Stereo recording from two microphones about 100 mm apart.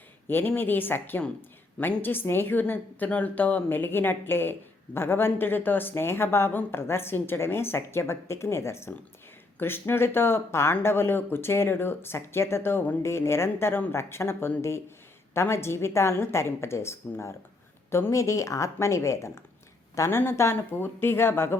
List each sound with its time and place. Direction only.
0.3 s speech: 20° left (ahead or behind)